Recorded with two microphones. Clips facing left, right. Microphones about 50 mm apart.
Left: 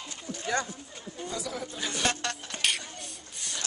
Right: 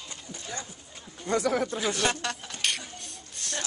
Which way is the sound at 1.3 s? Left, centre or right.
Right.